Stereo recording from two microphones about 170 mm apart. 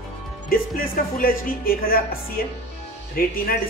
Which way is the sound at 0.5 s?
55° left (ahead or behind).